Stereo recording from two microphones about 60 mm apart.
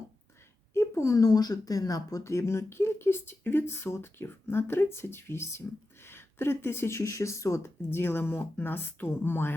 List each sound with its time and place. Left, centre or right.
0.7 s a sound: left
1.1 s speech: left
2.2 s speech: left